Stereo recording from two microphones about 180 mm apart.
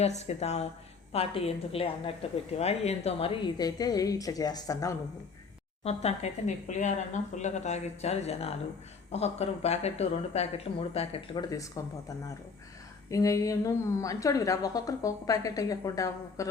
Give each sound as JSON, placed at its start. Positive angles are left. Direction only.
{"t": 0.0, "sound": "a woman's voice", "side_deg": 35}
{"t": 5.8, "sound": "speech", "side_deg": 35}
{"t": 11.4, "sound": "a woman's voice", "side_deg": 20}